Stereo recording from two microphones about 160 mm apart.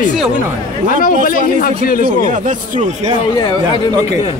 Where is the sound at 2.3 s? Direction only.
50° right (ahead or behind).